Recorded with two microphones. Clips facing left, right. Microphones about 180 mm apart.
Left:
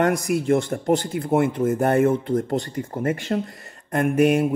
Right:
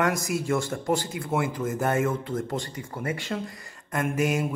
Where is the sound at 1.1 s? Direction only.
40° left (ahead or behind).